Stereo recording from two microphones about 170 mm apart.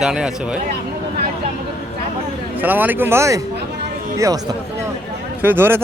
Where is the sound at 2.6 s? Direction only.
10° right (ahead or behind).